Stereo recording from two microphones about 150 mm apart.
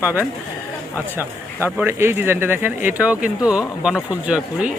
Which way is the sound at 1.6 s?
15° right (ahead or behind).